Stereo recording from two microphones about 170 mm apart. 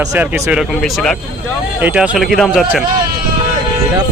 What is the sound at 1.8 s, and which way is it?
Speech, 10° right (ahead or behind).